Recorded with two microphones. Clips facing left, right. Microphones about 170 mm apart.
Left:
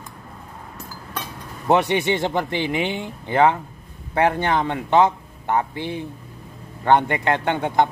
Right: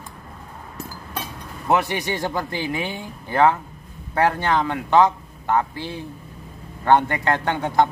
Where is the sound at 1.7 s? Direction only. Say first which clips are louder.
Left 3 dB; 25° left (ahead or behind).